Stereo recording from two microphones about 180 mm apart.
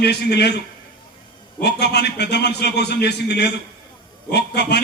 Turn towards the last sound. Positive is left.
turn(degrees=65)  # may be behind; listen again after turning